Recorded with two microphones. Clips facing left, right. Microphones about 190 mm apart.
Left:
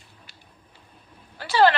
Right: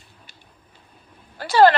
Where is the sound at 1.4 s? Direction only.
45° right (ahead or behind).